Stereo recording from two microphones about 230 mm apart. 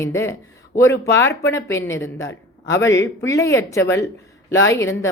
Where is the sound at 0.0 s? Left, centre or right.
Centre.